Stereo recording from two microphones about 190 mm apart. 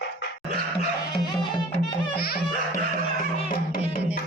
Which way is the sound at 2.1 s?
55° left (ahead or behind).